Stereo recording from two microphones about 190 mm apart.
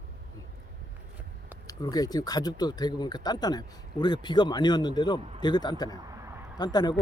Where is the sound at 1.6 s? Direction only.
20° left (ahead or behind).